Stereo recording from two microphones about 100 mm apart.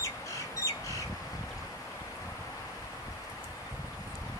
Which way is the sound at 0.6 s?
30° left (ahead or behind).